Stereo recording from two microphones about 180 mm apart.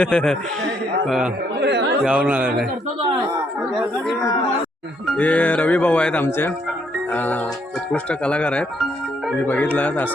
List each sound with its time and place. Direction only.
0.0 s speech: 5° left (ahead or behind)
1.6 s chatter: 75° right (ahead or behind)
2.0 s speech: 5° right (ahead or behind)
5.0 s speech: 5° left (ahead or behind)